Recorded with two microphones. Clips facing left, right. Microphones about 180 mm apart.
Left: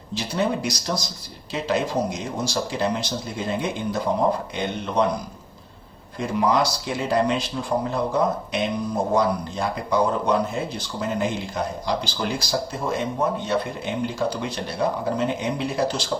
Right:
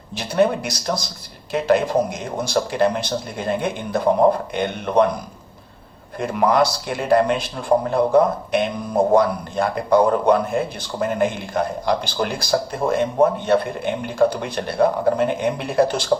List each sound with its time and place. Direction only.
0.1 s a man's voice: 55° right (ahead or behind)
6.1 s a man's voice: 55° right (ahead or behind)